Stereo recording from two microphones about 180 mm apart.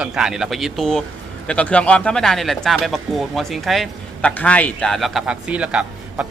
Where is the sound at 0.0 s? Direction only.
5° right (ahead or behind).